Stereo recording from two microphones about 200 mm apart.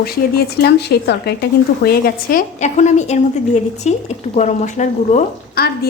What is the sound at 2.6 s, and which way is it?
Speech, 35° left (ahead or behind).